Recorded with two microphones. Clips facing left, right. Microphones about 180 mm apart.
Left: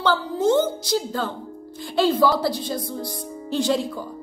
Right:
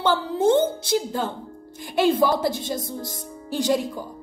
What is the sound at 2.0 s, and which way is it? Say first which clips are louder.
Speech: even; 50° right (ahead or behind).